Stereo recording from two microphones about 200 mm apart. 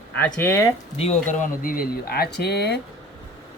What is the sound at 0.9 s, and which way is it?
Speech, 30° left (ahead or behind).